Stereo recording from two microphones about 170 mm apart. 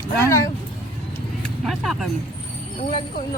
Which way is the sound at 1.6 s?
Centre (ahead or behind).